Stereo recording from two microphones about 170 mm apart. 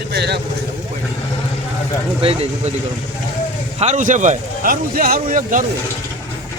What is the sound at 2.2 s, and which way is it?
Speech, 35° right (ahead or behind).